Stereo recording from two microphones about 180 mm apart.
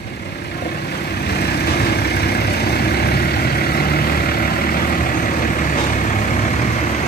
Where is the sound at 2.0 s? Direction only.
65° left (ahead or behind).